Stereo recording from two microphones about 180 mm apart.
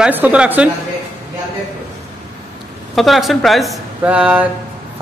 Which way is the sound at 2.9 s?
Centre (ahead or behind).